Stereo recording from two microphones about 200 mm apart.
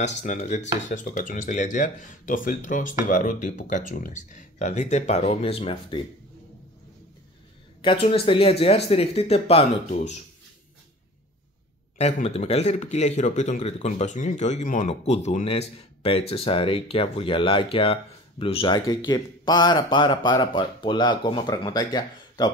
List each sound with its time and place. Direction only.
0.0 s speech: 40° left (ahead or behind)
7.8 s speech: 25° left (ahead or behind)
12.0 s speech: 35° left (ahead or behind)